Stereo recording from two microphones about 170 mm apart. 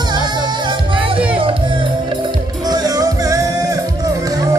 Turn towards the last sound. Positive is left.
turn(degrees=-20)  # may be behind; listen again after turning